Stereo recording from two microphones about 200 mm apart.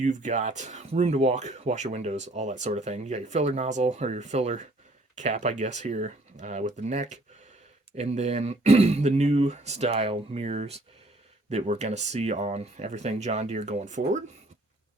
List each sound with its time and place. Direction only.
0.0 s speech: 40° right (ahead or behind)